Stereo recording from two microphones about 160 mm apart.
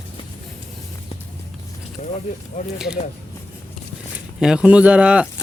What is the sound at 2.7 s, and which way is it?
Speech, 5° right (ahead or behind).